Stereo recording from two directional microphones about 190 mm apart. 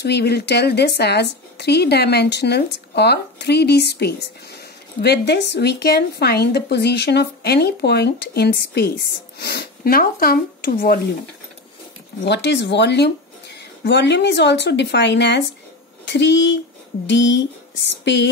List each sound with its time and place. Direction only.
0.0 s a woman's voice: 60° left (ahead or behind)
12.3 s a woman's voice: 65° left (ahead or behind)